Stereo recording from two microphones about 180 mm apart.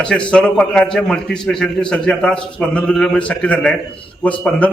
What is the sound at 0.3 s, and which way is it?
A man's voice, 5° left (ahead or behind).